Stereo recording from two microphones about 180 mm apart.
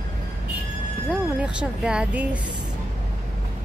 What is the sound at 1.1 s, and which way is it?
Speech, 5° right (ahead or behind).